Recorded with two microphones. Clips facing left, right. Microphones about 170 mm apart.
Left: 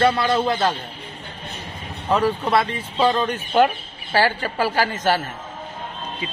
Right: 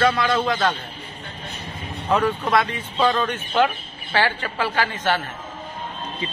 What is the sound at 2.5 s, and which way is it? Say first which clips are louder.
Speech: left 1 dB; 30° left (ahead or behind).